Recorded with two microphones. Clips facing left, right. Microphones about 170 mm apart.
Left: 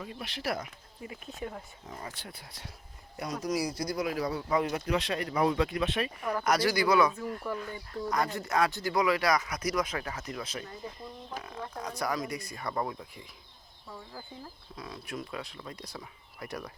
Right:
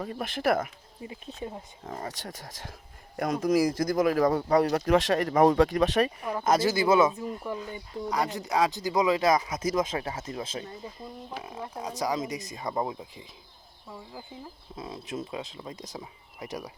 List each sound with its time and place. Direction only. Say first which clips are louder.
0.0 s speech: right 8 dB; 45° right (ahead or behind)
1.0 s speech: right 2 dB; 30° right (ahead or behind)
1.9 s speech: right 6 dB; 45° right (ahead or behind)
2.5 s speech: right 5 dB; 90° right
3.8 s speech: right 8 dB; 50° right (ahead or behind)
6.3 s speech: right 2 dB; 25° right (ahead or behind)
14.8 s speech: right 4 dB; 25° right (ahead or behind)